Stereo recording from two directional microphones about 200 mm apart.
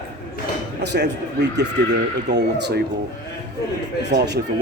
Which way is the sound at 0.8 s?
55° right (ahead or behind).